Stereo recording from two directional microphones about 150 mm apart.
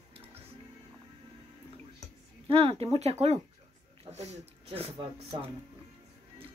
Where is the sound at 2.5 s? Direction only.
40° right (ahead or behind).